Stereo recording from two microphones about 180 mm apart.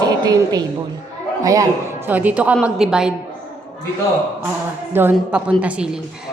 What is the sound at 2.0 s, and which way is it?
A woman's voice, 10° right (ahead or behind).